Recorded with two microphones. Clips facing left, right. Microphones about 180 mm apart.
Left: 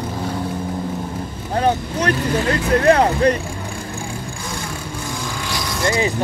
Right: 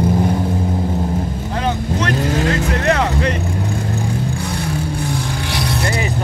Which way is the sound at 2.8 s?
35° left (ahead or behind).